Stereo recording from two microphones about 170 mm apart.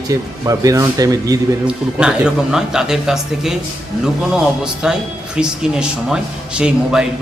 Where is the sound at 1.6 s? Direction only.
5° right (ahead or behind).